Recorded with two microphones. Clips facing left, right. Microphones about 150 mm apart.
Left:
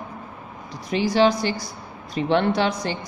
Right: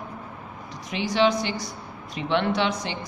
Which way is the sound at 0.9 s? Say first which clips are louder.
Left 3 dB; 35° left (ahead or behind).